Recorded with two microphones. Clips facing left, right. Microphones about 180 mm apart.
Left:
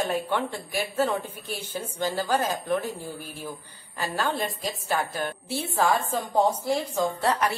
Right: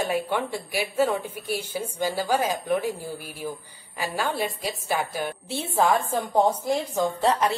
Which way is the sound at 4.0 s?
10° right (ahead or behind).